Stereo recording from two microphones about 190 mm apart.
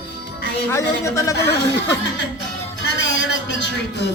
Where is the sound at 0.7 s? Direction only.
15° left (ahead or behind).